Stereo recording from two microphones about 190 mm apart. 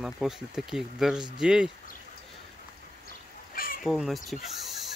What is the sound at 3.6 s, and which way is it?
Fowl, 50° left (ahead or behind).